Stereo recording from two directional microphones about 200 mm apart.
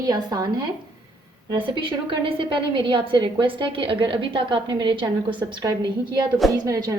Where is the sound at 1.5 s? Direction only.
25° right (ahead or behind).